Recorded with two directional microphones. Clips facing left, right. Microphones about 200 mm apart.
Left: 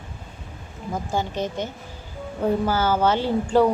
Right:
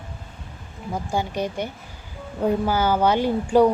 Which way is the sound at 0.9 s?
10° right (ahead or behind).